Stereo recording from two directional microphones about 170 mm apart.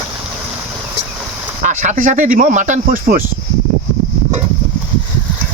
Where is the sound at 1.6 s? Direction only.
45° right (ahead or behind).